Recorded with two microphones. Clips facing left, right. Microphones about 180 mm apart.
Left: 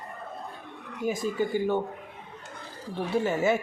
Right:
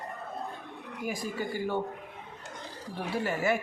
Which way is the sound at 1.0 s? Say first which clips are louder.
Left 6 dB; 25° left (ahead or behind).